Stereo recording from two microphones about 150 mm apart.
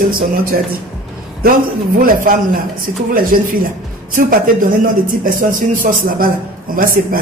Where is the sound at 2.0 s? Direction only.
70° right (ahead or behind).